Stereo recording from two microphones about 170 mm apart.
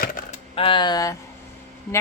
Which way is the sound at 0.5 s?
30° left (ahead or behind).